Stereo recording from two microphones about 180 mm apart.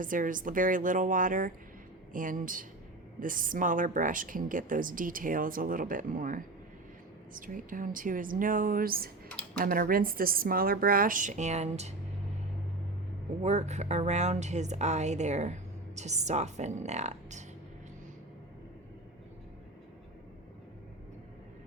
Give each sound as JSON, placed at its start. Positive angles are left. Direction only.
{"t": 0.0, "sound": "a woman's voice", "side_deg": -50}
{"t": 13.4, "sound": "speech", "side_deg": -40}